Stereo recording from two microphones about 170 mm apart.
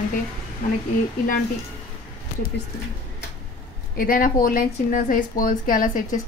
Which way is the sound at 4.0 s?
55° left (ahead or behind).